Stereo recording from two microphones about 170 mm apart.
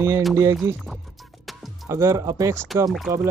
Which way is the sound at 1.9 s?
15° right (ahead or behind).